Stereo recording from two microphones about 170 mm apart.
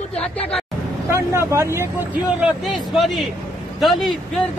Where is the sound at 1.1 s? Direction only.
15° right (ahead or behind).